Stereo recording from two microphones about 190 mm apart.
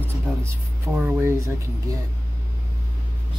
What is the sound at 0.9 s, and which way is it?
Speech, 10° right (ahead or behind).